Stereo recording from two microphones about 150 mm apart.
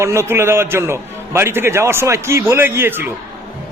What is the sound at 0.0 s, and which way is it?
A man's voice, 20° right (ahead or behind).